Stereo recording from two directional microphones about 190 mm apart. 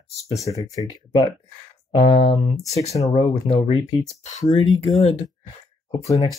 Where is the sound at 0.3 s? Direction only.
15° left (ahead or behind).